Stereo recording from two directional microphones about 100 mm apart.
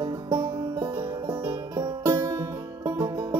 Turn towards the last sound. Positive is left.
turn(degrees=-30)  # may be behind; listen again after turning